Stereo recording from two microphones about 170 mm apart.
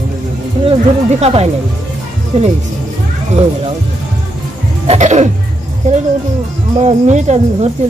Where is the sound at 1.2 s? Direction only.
40° right (ahead or behind).